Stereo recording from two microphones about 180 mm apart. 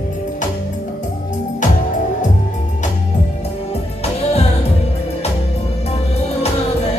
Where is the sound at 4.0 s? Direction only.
35° left (ahead or behind).